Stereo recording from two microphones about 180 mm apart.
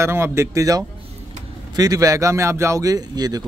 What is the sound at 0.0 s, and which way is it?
A man's voice, 15° right (ahead or behind).